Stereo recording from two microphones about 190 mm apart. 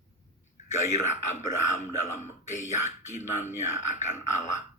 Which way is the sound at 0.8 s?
40° left (ahead or behind).